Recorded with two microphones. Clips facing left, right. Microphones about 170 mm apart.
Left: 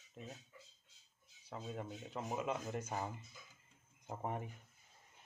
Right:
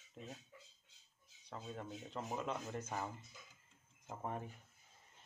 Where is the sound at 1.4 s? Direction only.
5° left (ahead or behind).